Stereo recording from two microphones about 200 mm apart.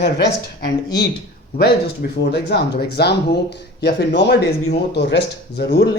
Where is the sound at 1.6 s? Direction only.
55° left (ahead or behind).